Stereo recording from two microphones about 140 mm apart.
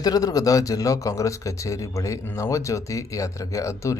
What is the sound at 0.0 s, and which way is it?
A man's voice, 25° left (ahead or behind).